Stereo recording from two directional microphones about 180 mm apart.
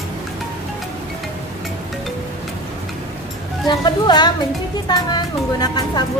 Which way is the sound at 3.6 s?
25° left (ahead or behind).